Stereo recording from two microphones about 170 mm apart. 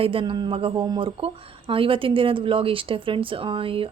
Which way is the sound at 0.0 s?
30° right (ahead or behind).